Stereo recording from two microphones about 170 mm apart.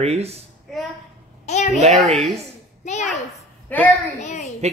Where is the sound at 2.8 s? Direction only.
40° left (ahead or behind).